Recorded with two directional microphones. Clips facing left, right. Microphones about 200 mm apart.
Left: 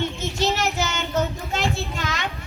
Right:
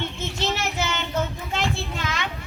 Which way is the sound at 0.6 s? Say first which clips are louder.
Left 2 dB; 45° left (ahead or behind).